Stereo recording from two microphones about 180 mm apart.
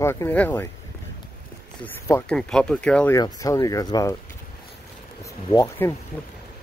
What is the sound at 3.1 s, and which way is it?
Speech, 20° left (ahead or behind).